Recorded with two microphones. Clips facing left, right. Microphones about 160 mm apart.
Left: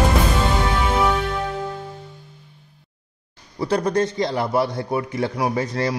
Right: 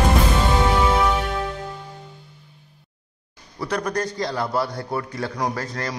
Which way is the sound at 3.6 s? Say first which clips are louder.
Left 5 dB; 30° left (ahead or behind).